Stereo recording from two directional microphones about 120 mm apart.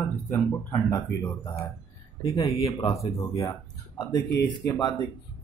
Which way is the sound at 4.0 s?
30° left (ahead or behind).